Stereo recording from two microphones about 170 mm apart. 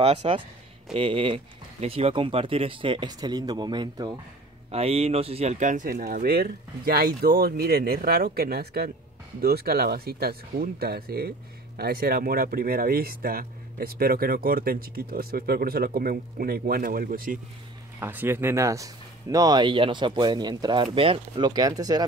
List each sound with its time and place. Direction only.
0.0 s speech: 35° right (ahead or behind)
4.6 s speech: 35° right (ahead or behind); by 17.4 s 55° right (ahead or behind)
18.0 s speech: 15° right (ahead or behind)